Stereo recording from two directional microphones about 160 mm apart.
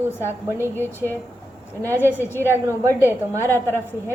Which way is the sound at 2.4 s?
15° right (ahead or behind).